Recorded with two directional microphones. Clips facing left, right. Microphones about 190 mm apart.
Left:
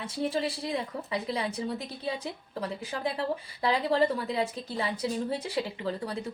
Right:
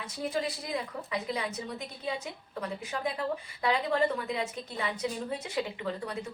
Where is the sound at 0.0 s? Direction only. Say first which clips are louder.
Left 3 dB; 30° left (ahead or behind).